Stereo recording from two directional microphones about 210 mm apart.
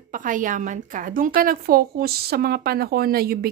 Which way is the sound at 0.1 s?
40° right (ahead or behind).